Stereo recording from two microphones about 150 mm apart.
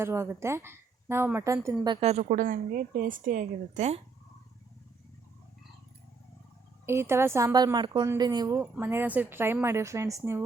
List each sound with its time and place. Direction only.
0.0 s a woman's voice: 15° right (ahead or behind)
2.0 s a woman's voice: 45° right (ahead or behind)
6.8 s a woman's voice: 15° right (ahead or behind)
8.8 s a woman's voice: 15° right (ahead or behind)